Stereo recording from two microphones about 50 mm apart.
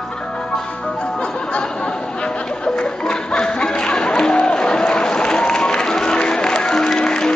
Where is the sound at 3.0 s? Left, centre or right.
Centre.